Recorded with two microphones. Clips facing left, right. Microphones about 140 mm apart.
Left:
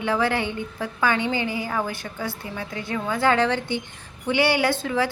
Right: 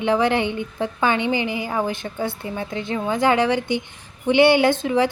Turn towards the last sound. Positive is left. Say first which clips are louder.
# right 5 dB
turn(degrees=-20)  # may be behind; listen again after turning